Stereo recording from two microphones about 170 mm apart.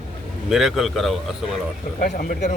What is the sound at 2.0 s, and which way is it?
Speech, 55° left (ahead or behind).